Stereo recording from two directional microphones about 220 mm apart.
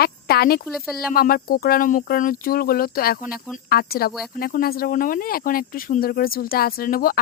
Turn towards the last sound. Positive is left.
turn(degrees=40)  # may be behind; listen again after turning